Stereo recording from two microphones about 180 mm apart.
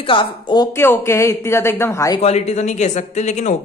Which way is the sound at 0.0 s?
25° left (ahead or behind).